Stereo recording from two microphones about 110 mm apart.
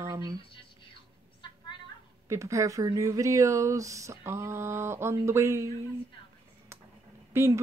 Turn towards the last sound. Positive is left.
turn(degrees=-20)  # may be behind; listen again after turning